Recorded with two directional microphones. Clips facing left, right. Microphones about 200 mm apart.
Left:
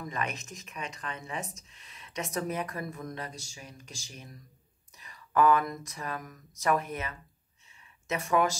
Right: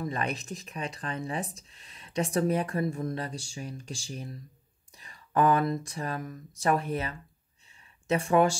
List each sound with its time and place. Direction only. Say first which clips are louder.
0.0 s speech: right 4 dB; 35° right (ahead or behind)